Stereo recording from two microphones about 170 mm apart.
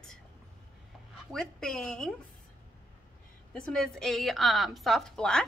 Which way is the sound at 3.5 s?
5° left (ahead or behind).